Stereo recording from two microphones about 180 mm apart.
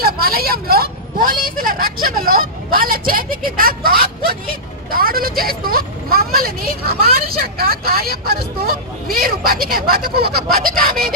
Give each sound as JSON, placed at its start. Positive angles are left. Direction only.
{"t": 0.0, "sound": "a woman's voice", "side_deg": -55}